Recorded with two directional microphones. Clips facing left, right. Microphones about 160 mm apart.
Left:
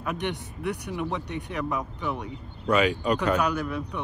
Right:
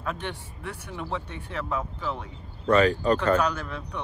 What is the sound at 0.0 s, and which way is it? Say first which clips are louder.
Speech: left 3 dB; 15° left (ahead or behind).